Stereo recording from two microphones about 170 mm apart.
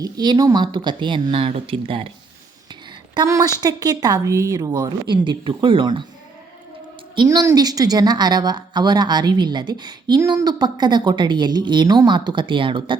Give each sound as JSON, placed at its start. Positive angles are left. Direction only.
{"t": 0.0, "sound": "speech", "side_deg": -25}
{"t": 3.2, "sound": "speech", "side_deg": -20}
{"t": 7.2, "sound": "speech", "side_deg": -20}